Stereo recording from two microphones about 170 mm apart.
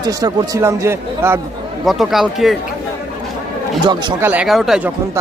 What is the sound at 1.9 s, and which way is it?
Speech, centre (ahead or behind).